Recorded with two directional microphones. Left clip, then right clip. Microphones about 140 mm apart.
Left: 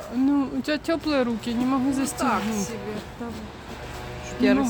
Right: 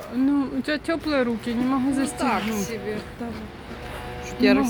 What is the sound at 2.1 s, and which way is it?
Speech, 10° left (ahead or behind).